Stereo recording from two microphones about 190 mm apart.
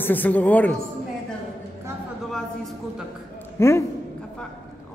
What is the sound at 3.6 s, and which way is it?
Speech, 15° left (ahead or behind).